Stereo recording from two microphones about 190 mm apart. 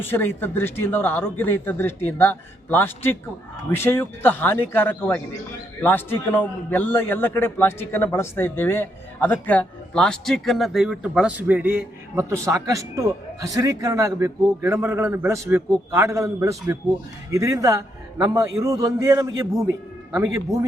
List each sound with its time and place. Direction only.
0.0 s a man's voice: 10° left (ahead or behind); by 20.7 s 15° right (ahead or behind)